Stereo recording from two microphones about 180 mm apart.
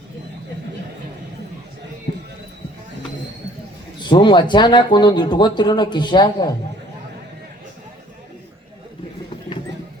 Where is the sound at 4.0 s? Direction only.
25° left (ahead or behind).